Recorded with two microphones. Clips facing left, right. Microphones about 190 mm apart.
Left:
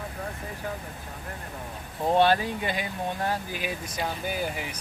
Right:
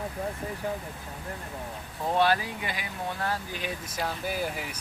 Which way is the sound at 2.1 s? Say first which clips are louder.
Left 3 dB; 25° left (ahead or behind).